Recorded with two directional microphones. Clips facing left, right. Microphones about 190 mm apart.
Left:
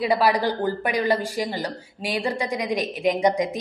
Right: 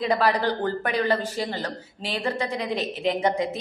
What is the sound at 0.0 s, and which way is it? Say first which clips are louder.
Speech: left 2 dB; 10° left (ahead or behind).